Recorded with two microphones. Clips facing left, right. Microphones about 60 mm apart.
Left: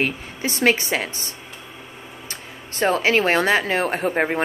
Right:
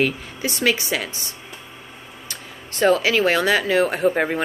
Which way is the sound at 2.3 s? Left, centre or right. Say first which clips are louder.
Right 2 dB; left.